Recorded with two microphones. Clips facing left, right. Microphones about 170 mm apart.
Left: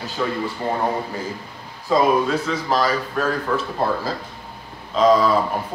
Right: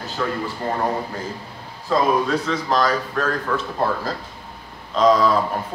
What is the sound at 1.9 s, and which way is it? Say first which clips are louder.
Speech: left 1 dB; 15° left (ahead or behind).